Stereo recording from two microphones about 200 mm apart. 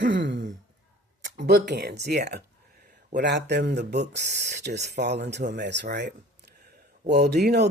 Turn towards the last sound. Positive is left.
turn(degrees=-55)  # may be behind; listen again after turning